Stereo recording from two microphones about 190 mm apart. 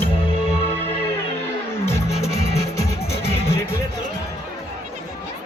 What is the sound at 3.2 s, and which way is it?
Music, 30° left (ahead or behind).